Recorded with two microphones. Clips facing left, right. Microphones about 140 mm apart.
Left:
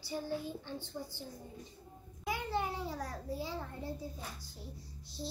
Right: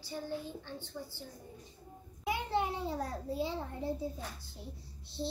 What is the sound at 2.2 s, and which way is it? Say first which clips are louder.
A child's voice: right 3 dB; 20° right (ahead or behind).